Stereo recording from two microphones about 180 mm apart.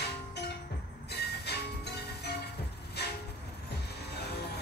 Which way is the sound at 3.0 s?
65° left (ahead or behind).